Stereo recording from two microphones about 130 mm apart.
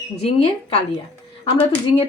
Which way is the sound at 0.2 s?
45° left (ahead or behind).